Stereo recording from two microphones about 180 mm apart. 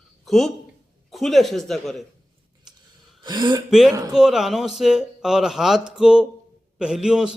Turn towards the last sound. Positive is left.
turn(degrees=-5)  # may be behind; listen again after turning